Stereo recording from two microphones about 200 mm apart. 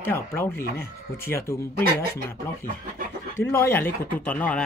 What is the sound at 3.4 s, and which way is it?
Speech, 10° left (ahead or behind).